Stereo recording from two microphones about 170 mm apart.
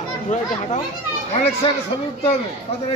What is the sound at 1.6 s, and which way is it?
Speech, 30° left (ahead or behind).